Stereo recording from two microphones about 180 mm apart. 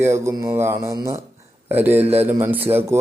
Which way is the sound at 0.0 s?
15° right (ahead or behind).